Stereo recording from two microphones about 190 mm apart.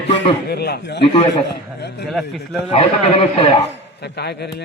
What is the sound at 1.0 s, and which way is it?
Speech, 30° left (ahead or behind).